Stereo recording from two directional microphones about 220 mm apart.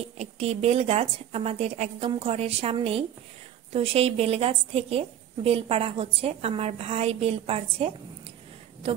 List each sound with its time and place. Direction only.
0.2 s a woman's voice: 30° right (ahead or behind)